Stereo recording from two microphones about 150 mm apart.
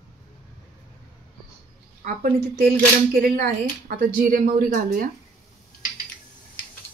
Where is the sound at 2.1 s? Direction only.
80° right.